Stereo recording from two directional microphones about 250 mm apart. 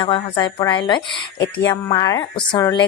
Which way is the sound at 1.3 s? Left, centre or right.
Left.